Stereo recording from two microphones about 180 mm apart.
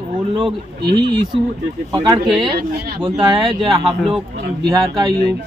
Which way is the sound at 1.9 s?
25° right (ahead or behind).